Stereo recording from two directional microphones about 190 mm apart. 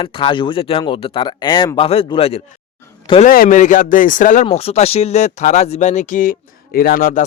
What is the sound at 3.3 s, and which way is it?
Speech, 45° left (ahead or behind).